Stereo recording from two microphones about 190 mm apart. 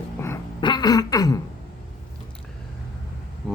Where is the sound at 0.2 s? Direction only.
20° left (ahead or behind).